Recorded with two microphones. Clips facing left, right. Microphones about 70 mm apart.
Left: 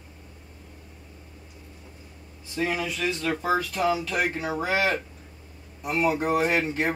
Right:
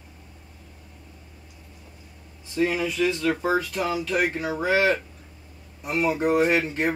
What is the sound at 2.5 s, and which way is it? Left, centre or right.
Speech, left.